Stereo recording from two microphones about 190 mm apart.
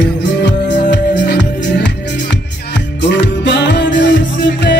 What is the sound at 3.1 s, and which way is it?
Music, 65° left (ahead or behind).